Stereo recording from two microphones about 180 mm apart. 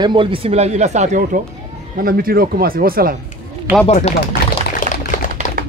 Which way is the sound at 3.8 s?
35° left (ahead or behind).